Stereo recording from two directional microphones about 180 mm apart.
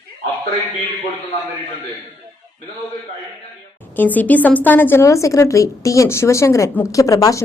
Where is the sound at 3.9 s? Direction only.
10° left (ahead or behind).